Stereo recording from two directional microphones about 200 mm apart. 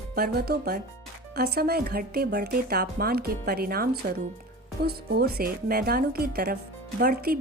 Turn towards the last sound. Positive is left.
turn(degrees=-50)  # may be behind; listen again after turning